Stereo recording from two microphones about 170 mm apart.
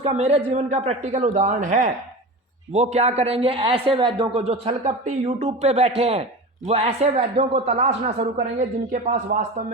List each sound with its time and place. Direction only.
0.1 s speech: 40° right (ahead or behind)